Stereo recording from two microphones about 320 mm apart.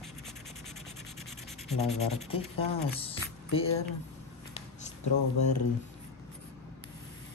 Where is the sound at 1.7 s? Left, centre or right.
Centre.